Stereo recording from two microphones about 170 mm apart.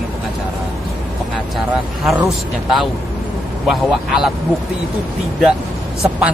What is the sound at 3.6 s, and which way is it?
Speech, 5° right (ahead or behind).